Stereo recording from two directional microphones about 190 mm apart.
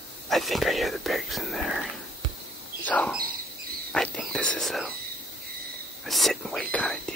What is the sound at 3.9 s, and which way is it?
Whispering, 5° left (ahead or behind).